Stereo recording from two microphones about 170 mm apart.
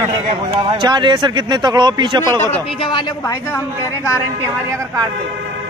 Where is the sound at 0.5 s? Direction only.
30° right (ahead or behind).